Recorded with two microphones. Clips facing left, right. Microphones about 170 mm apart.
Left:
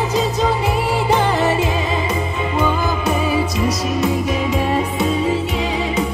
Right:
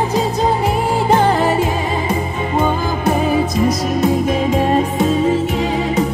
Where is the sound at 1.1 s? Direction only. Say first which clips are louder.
Right 3 dB; 50° right (ahead or behind).